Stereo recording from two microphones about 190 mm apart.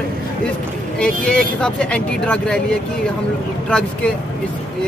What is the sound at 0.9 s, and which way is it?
Speech, 5° left (ahead or behind).